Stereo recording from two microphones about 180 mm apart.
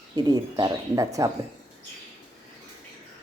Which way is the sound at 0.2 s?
20° right (ahead or behind).